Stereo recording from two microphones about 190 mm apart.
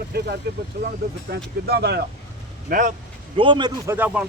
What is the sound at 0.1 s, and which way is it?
Speech, 60° right (ahead or behind).